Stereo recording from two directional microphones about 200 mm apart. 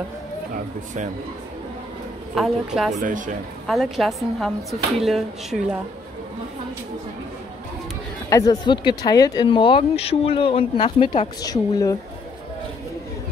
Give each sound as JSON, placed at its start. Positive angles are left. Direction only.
{"t": 2.3, "sound": "a woman's voice", "side_deg": 0}
{"t": 2.9, "sound": "speech", "side_deg": -40}
{"t": 3.6, "sound": "a woman's voice", "side_deg": 0}
{"t": 8.3, "sound": "speech", "side_deg": 15}